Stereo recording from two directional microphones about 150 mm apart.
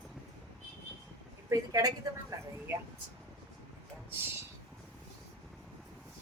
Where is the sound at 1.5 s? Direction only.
25° right (ahead or behind).